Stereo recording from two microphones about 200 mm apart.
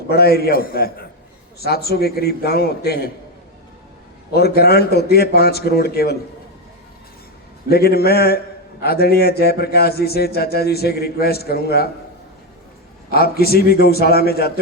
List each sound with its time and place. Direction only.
0.1 s speech: 50° left (ahead or behind)
4.4 s speech: 55° left (ahead or behind)
7.7 s speech: 50° left (ahead or behind)
13.1 s speech: 50° left (ahead or behind)